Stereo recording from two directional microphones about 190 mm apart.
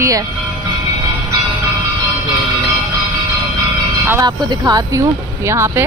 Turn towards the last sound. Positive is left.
turn(degrees=-15)  # may be behind; listen again after turning